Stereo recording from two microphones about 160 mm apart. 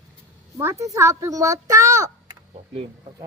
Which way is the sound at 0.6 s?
20° right (ahead or behind).